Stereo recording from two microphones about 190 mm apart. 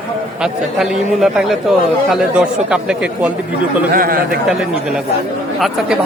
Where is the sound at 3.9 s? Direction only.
50° right (ahead or behind).